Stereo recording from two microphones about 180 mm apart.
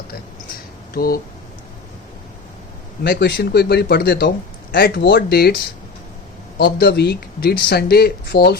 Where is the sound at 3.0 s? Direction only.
65° left (ahead or behind).